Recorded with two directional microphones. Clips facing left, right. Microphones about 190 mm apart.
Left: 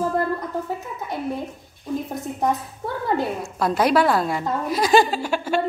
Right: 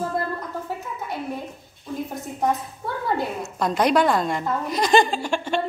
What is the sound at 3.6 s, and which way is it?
A woman's voice, 5° left (ahead or behind).